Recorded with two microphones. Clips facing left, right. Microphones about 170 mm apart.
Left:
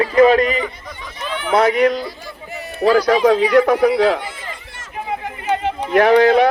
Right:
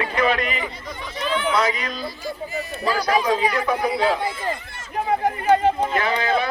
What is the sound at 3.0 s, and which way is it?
Speech, 90° left.